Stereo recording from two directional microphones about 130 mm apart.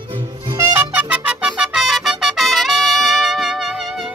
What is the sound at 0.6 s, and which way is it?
Music, 15° right (ahead or behind).